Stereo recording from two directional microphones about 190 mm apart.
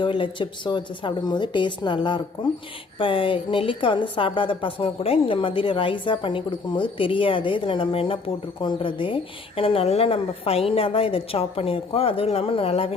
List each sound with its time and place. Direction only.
0.0 s a woman's voice: 25° left (ahead or behind)